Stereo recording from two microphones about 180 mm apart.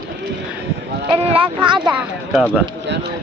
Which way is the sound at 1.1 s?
30° right (ahead or behind).